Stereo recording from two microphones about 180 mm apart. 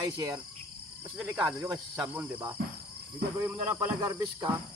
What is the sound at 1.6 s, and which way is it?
Cricket, 20° right (ahead or behind).